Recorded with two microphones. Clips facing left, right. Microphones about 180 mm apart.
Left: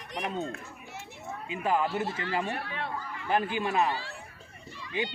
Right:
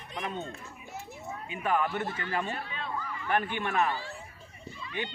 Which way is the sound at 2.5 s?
65° left (ahead or behind).